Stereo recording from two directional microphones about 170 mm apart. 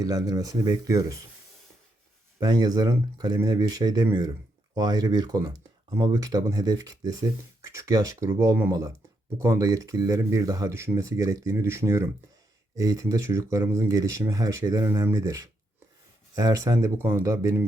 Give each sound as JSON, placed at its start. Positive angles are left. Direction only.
{"t": 0.0, "sound": "speech", "side_deg": -20}
{"t": 2.4, "sound": "speech", "side_deg": -25}